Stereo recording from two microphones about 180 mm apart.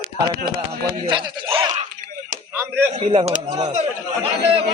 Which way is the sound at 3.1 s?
30° right (ahead or behind).